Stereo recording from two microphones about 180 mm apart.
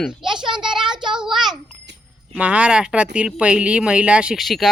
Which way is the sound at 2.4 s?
5° right (ahead or behind).